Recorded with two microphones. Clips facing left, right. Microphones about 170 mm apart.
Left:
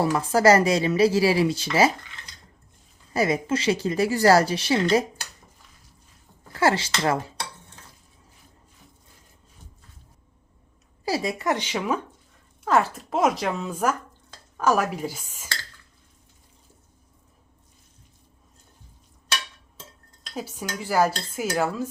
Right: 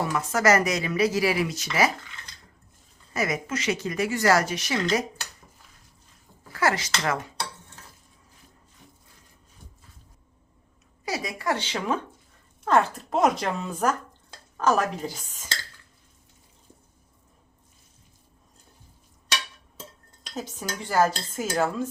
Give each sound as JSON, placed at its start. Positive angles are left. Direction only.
{"t": 0.0, "sound": "speech", "side_deg": 30}
{"t": 3.1, "sound": "a woman's voice", "side_deg": 30}
{"t": 6.5, "sound": "speech", "side_deg": 30}
{"t": 11.0, "sound": "speech", "side_deg": 30}
{"t": 20.3, "sound": "speech", "side_deg": 10}